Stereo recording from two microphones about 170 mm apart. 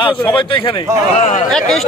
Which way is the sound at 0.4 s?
30° left (ahead or behind).